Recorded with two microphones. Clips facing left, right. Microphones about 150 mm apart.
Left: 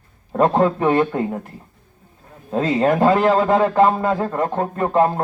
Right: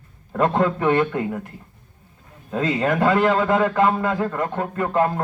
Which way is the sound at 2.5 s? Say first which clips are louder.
Left 4 dB; 35° left (ahead or behind).